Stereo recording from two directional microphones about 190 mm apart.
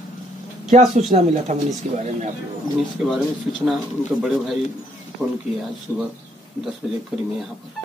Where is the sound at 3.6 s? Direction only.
Centre (ahead or behind).